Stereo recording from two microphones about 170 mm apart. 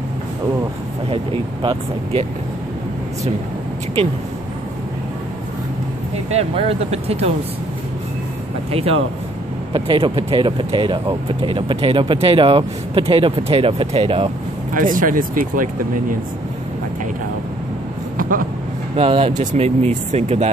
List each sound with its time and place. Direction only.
1.1 s speech: 30° right (ahead or behind)
6.3 s speech: 35° right (ahead or behind)
9.7 s speech: 30° right (ahead or behind)
14.7 s speech: 50° right (ahead or behind)
18.1 s vehicle: 55° right (ahead or behind)
18.9 s speech: 35° right (ahead or behind)